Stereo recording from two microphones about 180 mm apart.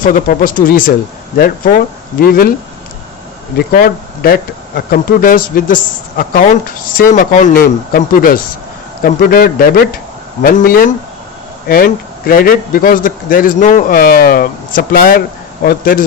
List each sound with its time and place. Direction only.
0.0 s speech: 50° left (ahead or behind)
3.7 s speech: 55° left (ahead or behind)